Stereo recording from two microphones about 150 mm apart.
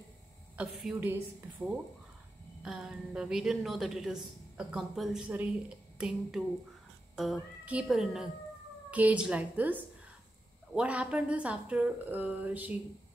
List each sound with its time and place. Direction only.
0.6 s a woman's voice: 10° right (ahead or behind)